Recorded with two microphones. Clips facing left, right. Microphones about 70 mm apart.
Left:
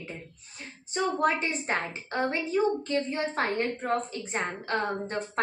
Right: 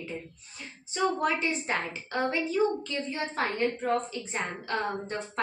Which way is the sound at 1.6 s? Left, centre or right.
Left.